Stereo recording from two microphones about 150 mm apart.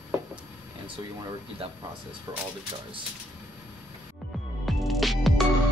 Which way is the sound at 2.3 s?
25° right (ahead or behind).